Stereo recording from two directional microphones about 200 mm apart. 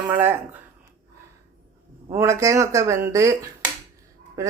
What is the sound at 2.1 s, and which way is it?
Speech, 15° right (ahead or behind).